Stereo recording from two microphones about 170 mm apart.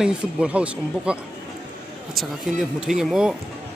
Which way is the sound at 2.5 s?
5° right (ahead or behind).